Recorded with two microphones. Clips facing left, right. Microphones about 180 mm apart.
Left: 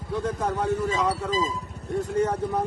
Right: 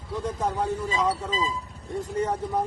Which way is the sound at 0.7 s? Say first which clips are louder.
Left 4 dB; 70° left (ahead or behind).